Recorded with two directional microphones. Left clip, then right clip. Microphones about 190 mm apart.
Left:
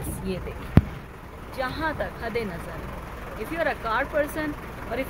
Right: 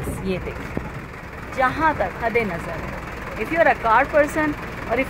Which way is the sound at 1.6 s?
Centre (ahead or behind).